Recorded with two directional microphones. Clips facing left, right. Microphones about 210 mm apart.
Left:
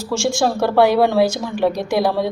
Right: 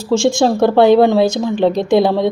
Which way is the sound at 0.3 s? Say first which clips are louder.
Right 4 dB; 20° right (ahead or behind).